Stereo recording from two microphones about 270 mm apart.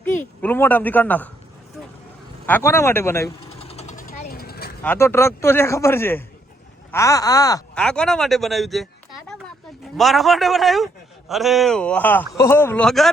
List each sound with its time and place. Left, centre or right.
0.0 s a woman's voice: centre
2.5 s a man's voice: centre
3.6 s jackhammer: left
4.8 s a man's voice: centre
10.0 s speech: centre